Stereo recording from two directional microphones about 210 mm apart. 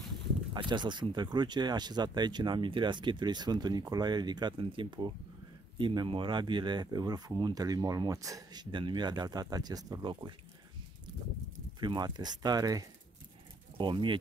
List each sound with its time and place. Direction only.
0.5 s speech: 20° right (ahead or behind)
11.8 s speech: 20° right (ahead or behind)